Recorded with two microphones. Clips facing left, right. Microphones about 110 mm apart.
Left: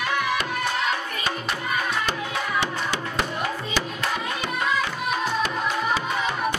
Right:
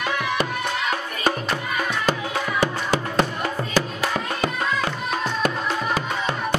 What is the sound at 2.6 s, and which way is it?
Music, 45° right (ahead or behind).